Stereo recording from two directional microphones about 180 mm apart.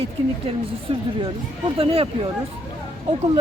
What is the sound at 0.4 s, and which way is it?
A woman's voice, 30° right (ahead or behind).